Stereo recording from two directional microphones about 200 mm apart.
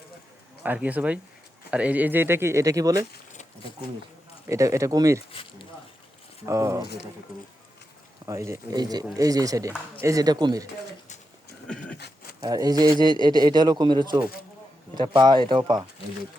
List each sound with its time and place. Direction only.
0.6 s speech: 10° right (ahead or behind)
4.4 s speech: 15° right (ahead or behind)
5.3 s a sound: 25° left (ahead or behind)
6.4 s speech: 15° right (ahead or behind)
8.3 s speech: 15° right (ahead or behind)
11.9 s a sound: 55° left (ahead or behind)
12.4 s a man's voice: 20° right (ahead or behind)